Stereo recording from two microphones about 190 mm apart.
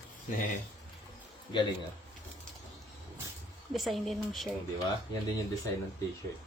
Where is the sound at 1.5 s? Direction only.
25° left (ahead or behind).